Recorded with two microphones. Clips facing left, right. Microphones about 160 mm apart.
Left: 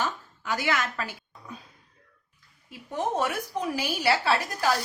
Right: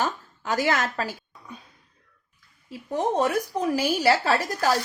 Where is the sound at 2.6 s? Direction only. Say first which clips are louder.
Right 4 dB; 35° right (ahead or behind).